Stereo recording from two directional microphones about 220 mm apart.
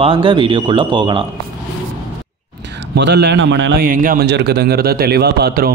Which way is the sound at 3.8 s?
40° right (ahead or behind).